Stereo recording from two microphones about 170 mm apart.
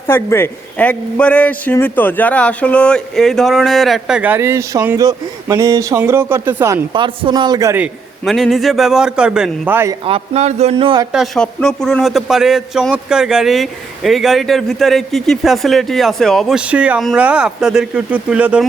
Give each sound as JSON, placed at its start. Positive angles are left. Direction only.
{"t": 0.1, "sound": "a man's voice", "side_deg": 15}
{"t": 6.9, "sound": "speech", "side_deg": -30}
{"t": 7.8, "sound": "a man's voice", "side_deg": 0}
{"t": 10.0, "sound": "speech", "side_deg": -35}
{"t": 11.1, "sound": "a man's voice", "side_deg": 0}